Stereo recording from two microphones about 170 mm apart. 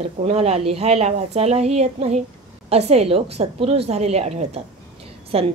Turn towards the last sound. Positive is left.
turn(degrees=-35)  # may be behind; listen again after turning